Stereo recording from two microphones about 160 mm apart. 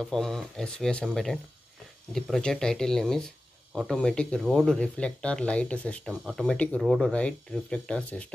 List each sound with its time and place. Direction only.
0.0 s speech: 5° left (ahead or behind)